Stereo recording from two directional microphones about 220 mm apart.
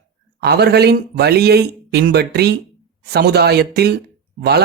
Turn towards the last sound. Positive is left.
turn(degrees=-45)  # may be behind; listen again after turning